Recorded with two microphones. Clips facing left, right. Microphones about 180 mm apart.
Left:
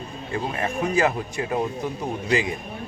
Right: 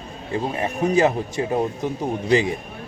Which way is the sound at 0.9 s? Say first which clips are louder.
Right 4 dB; 25° right (ahead or behind).